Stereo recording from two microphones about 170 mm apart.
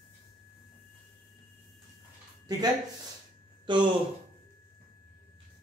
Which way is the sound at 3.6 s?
25° right (ahead or behind).